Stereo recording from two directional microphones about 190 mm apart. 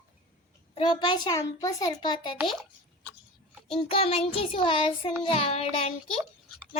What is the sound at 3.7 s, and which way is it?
Child singing, 30° left (ahead or behind).